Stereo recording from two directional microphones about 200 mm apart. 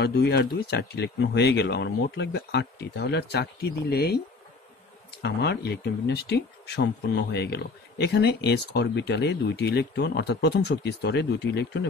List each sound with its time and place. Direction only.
0.0 s speech: 55° left (ahead or behind)
5.2 s speech: 55° left (ahead or behind)